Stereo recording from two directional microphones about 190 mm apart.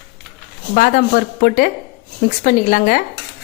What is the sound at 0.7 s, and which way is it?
A woman's voice, 50° left (ahead or behind).